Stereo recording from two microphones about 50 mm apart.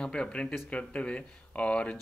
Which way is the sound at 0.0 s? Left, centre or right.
Centre.